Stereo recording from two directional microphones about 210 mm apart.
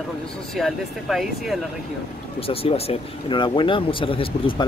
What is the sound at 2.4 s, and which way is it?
Speech, 25° left (ahead or behind).